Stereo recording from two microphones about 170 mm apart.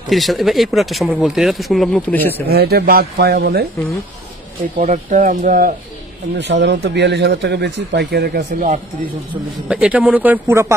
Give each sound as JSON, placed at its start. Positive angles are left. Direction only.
{"t": 0.1, "sound": "speech", "side_deg": 0}
{"t": 2.4, "sound": "speech", "side_deg": -70}
{"t": 4.7, "sound": "speech", "side_deg": -45}
{"t": 6.3, "sound": "speech", "side_deg": -90}
{"t": 9.7, "sound": "speech", "side_deg": -5}